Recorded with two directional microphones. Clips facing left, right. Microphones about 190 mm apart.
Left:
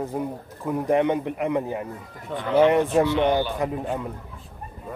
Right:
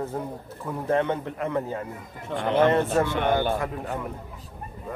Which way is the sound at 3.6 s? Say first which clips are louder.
Left 4 dB; 20° left (ahead or behind).